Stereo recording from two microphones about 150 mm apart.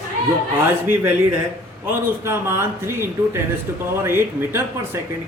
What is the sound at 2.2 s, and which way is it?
A man's voice, 15° right (ahead or behind).